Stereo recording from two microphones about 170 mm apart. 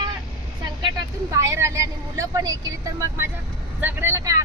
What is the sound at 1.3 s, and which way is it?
Speech, 20° right (ahead or behind).